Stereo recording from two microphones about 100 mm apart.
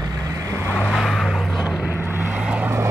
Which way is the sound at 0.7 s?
10° left (ahead or behind).